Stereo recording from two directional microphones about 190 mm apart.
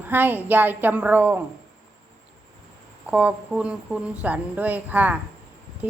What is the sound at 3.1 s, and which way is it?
Speech, 5° right (ahead or behind).